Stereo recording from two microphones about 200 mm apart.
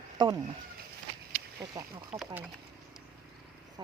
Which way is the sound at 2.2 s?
10° right (ahead or behind).